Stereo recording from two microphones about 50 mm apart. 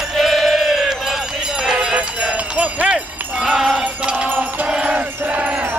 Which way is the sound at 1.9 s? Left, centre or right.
Right.